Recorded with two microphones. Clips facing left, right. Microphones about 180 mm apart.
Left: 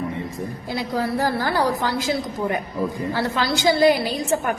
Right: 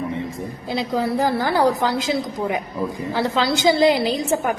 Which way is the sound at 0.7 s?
25° right (ahead or behind).